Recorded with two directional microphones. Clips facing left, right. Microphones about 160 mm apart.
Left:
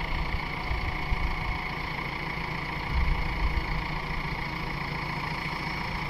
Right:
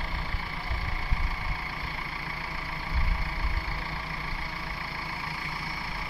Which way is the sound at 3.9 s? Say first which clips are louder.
Left 3 dB; 20° left (ahead or behind).